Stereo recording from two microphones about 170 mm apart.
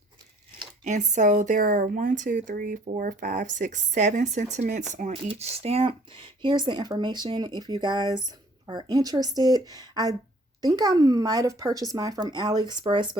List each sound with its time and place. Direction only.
0.9 s a woman's voice: 45° right (ahead or behind); by 13.1 s 30° right (ahead or behind)